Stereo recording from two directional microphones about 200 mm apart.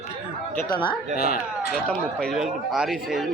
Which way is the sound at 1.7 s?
Centre (ahead or behind).